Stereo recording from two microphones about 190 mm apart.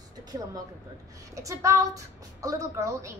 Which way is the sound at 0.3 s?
20° right (ahead or behind).